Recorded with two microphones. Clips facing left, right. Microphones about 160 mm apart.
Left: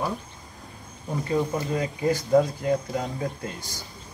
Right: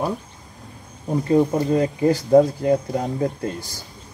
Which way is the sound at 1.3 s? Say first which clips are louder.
Right 8 dB; 35° right (ahead or behind).